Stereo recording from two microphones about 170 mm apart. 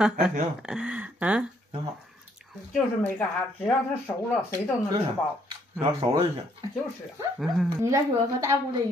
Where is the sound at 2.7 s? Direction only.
10° left (ahead or behind).